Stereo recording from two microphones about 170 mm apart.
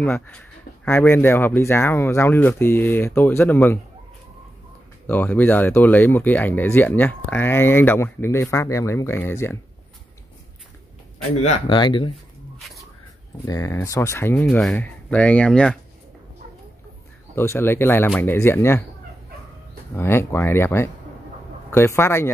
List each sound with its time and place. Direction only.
0.0 s speech: 10° left (ahead or behind)
5.0 s speech: 10° left (ahead or behind)
11.4 s speech: 30° left (ahead or behind)
12.5 s a sound: centre (ahead or behind)
13.5 s speech: 20° left (ahead or behind)
17.4 s speech: 15° left (ahead or behind)
20.0 s speech: 15° left (ahead or behind)